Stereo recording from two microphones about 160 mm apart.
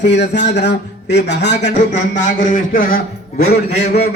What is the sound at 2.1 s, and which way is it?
A man's voice, 55° left (ahead or behind).